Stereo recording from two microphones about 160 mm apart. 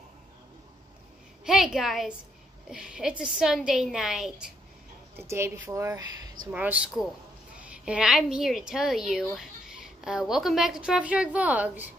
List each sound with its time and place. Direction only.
1.4 s speech: 5° right (ahead or behind)
5.1 s speech: 15° right (ahead or behind)
6.5 s speech: 10° right (ahead or behind)